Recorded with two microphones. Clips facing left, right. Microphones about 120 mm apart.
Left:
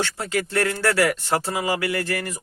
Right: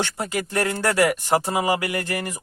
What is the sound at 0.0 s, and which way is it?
Speech, 15° right (ahead or behind).